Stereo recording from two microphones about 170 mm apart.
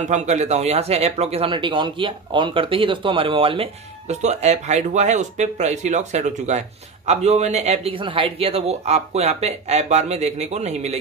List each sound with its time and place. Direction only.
0.0 s speech: 45° right (ahead or behind)